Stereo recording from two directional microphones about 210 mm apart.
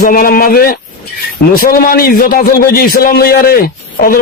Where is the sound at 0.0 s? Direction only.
40° left (ahead or behind).